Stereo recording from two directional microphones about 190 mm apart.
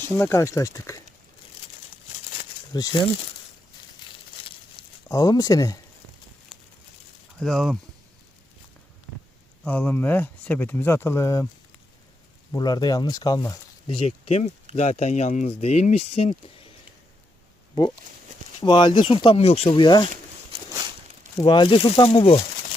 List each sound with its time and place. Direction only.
0.2 s speech: 15° left (ahead or behind)
2.7 s speech: 20° left (ahead or behind)
5.0 s speech: 20° left (ahead or behind)
7.3 s speech: centre (ahead or behind)
9.6 s speech: 10° left (ahead or behind)
12.5 s speech: 20° left (ahead or behind)
14.0 s speech: 35° left (ahead or behind)
18.6 s speech: 25° left (ahead or behind)
20.5 s a sound: 30° right (ahead or behind)
21.4 s speech: 25° left (ahead or behind)